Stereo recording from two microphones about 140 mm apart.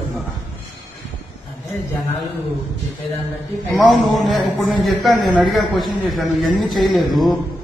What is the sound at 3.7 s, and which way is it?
A man's voice, centre (ahead or behind).